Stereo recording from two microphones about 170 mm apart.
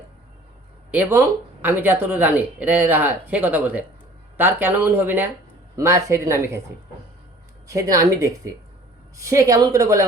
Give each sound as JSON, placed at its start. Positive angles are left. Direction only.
{"t": 0.9, "sound": "speech", "side_deg": -10}
{"t": 7.7, "sound": "speech", "side_deg": -20}